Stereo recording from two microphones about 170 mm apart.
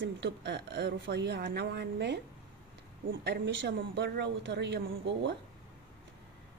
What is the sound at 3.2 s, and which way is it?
A woman's voice, 85° right.